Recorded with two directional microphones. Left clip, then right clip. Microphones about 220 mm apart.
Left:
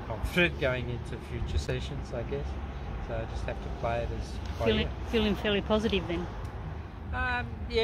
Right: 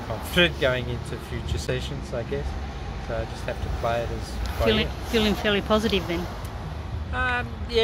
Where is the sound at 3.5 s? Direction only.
5° left (ahead or behind).